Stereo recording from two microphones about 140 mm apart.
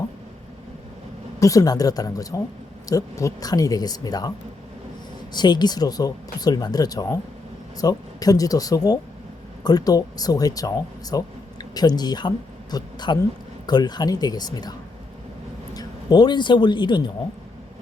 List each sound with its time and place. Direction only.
1.4 s speech: 25° left (ahead or behind)
5.3 s speech: 30° left (ahead or behind)
15.7 s a man's voice: 30° left (ahead or behind)